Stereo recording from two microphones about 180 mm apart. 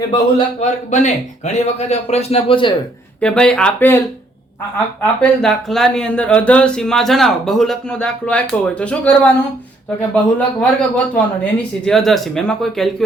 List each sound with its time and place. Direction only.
0.6 s a man's voice: 40° left (ahead or behind)
3.2 s speech: 5° left (ahead or behind)
5.2 s speech: centre (ahead or behind)